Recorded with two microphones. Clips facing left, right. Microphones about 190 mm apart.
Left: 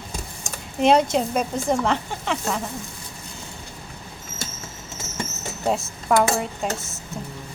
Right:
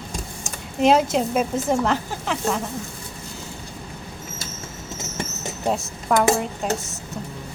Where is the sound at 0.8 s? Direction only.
Centre (ahead or behind).